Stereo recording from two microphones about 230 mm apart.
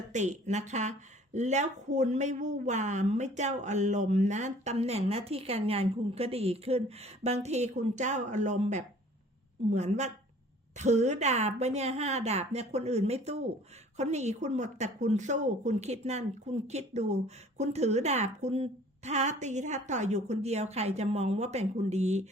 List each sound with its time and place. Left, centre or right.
0.1 s speech: right